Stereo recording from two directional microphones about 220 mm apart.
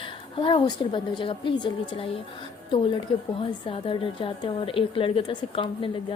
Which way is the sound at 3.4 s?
25° left (ahead or behind).